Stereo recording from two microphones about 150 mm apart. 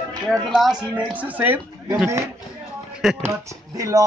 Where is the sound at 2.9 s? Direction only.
Centre (ahead or behind).